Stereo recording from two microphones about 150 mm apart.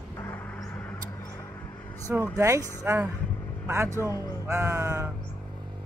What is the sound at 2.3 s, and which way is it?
Speech, 20° right (ahead or behind).